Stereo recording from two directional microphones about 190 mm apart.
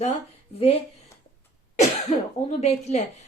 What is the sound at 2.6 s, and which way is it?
Speech, 35° left (ahead or behind).